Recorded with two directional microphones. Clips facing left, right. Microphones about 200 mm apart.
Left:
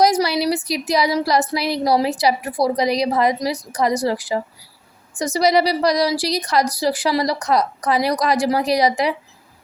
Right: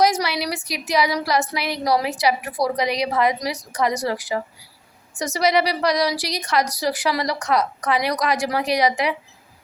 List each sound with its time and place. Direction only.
0.0 s speech: 35° left (ahead or behind)